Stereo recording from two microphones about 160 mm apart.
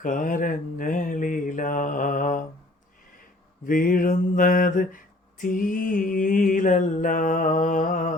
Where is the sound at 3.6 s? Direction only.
60° left (ahead or behind).